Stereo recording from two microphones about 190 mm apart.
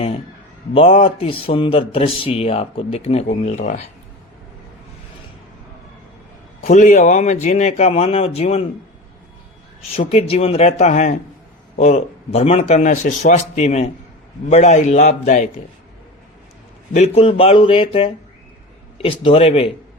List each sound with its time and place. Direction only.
0.7 s a man's voice: 30° left (ahead or behind)
6.6 s a man's voice: 35° left (ahead or behind)
9.9 s a man's voice: 35° left (ahead or behind)
16.9 s speech: 35° left (ahead or behind)